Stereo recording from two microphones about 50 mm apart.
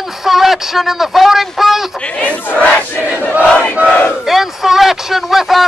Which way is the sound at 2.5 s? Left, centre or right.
Left.